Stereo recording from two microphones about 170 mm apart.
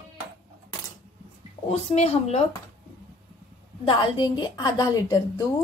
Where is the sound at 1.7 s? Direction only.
35° left (ahead or behind).